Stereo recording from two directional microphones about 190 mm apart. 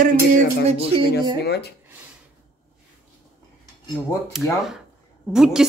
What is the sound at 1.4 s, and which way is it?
Speech, 60° left (ahead or behind).